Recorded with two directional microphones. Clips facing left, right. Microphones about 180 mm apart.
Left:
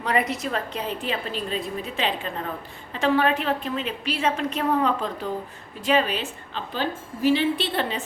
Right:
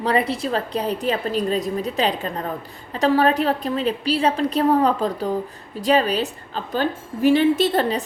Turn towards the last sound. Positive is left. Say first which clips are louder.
# right 7 dB
turn(degrees=-40)  # may be behind; listen again after turning